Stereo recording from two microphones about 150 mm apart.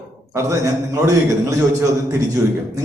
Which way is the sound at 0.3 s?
20° right (ahead or behind).